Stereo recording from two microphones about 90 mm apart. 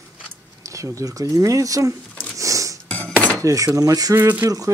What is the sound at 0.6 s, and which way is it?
Speech, 35° right (ahead or behind).